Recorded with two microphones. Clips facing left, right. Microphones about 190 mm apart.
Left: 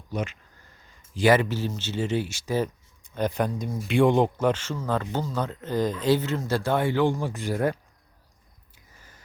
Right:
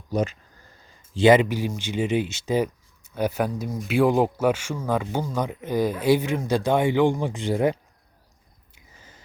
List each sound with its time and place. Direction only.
0.1 s speech: 40° right (ahead or behind)
1.1 s speech: 20° right (ahead or behind)
3.0 s speech: 10° right (ahead or behind)
8.7 s a sound: 20° right (ahead or behind)